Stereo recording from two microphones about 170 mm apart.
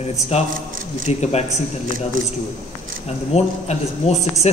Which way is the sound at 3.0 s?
40° left (ahead or behind).